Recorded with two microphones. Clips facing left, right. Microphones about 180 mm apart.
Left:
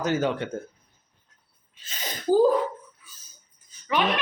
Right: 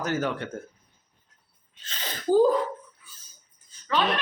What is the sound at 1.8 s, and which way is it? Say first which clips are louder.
Speech: left 1 dB; 10° left (ahead or behind).